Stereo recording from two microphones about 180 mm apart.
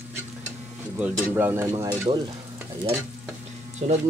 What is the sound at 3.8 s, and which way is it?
Speech, 45° right (ahead or behind).